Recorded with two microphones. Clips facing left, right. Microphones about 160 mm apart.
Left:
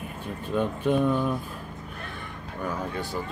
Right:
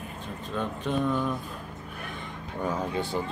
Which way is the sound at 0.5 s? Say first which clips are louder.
Left 5 dB; 10° left (ahead or behind).